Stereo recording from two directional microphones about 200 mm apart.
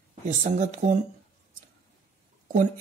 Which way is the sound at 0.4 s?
35° right (ahead or behind).